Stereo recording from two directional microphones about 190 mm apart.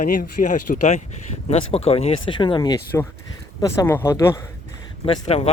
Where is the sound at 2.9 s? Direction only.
10° left (ahead or behind).